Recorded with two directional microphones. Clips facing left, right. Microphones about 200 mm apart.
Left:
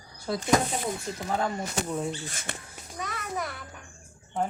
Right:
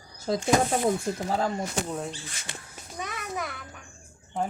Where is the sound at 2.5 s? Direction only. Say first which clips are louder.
Left 3 dB; 55° left (ahead or behind).